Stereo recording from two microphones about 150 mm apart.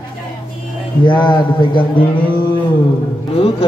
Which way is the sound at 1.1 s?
30° left (ahead or behind).